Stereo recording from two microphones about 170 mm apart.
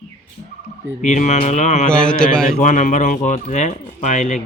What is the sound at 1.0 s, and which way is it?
Speech, 45° left (ahead or behind).